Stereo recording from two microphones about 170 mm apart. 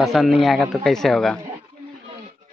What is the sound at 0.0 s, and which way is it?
A man's voice, centre (ahead or behind).